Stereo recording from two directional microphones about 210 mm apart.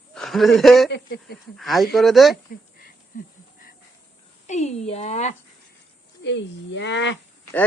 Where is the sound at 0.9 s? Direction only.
50° left (ahead or behind).